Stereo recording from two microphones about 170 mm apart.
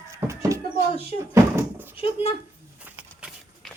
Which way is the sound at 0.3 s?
15° right (ahead or behind).